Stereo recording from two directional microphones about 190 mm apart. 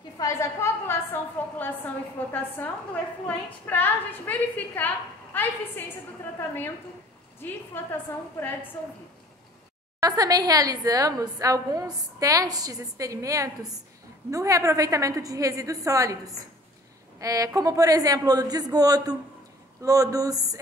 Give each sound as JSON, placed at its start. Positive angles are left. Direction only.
{"t": 0.2, "sound": "a woman's voice", "side_deg": 15}
{"t": 7.3, "sound": "a woman's voice", "side_deg": 10}
{"t": 9.9, "sound": "a woman's voice", "side_deg": -20}